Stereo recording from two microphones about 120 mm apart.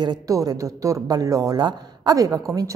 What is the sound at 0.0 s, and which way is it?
Speech, 30° right (ahead or behind).